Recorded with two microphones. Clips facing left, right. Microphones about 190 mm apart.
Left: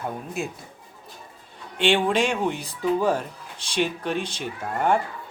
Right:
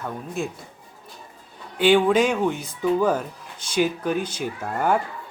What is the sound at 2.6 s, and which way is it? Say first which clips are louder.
Speech: right 2 dB; 30° left (ahead or behind).